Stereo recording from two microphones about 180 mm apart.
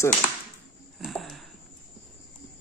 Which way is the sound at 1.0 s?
Centre (ahead or behind).